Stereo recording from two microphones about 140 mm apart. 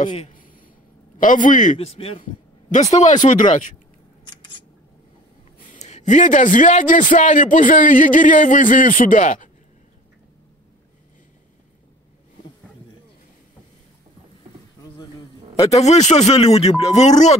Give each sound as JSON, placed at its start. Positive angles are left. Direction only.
{"t": 0.3, "sound": "a sound", "side_deg": 75}
{"t": 1.1, "sound": "a man's voice", "side_deg": 70}
{"t": 2.7, "sound": "a man's voice", "side_deg": 55}
{"t": 4.2, "sound": "scissors", "side_deg": 35}
{"t": 5.6, "sound": "a man's voice", "side_deg": 60}
{"t": 15.7, "sound": "speech", "side_deg": 50}